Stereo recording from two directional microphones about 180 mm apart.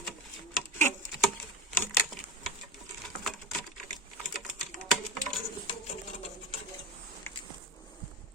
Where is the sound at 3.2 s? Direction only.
Centre (ahead or behind).